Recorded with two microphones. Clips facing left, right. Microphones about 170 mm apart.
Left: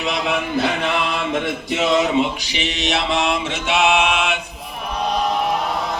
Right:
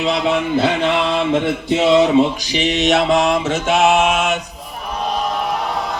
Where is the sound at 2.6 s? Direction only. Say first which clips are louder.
Right 7 dB; 45° right (ahead or behind).